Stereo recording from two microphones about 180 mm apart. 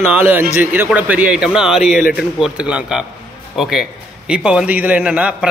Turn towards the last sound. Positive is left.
turn(degrees=-5)  # may be behind; listen again after turning